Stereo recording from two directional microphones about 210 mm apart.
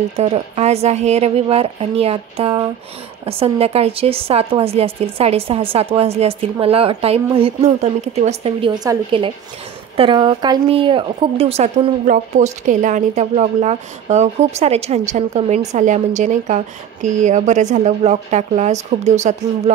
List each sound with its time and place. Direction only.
0.2 s a woman's voice: 30° right (ahead or behind)